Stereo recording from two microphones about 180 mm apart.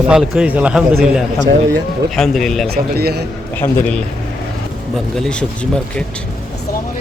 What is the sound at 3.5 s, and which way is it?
A man's voice, 10° left (ahead or behind).